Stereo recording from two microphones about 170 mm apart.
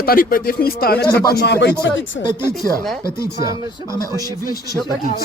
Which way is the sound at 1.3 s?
80° left.